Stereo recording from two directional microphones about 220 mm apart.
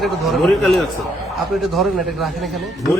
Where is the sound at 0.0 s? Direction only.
Centre (ahead or behind).